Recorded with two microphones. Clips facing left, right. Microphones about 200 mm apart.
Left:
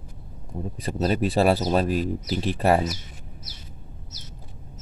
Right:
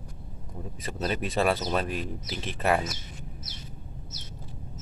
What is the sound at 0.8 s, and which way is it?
Speech, 35° left (ahead or behind).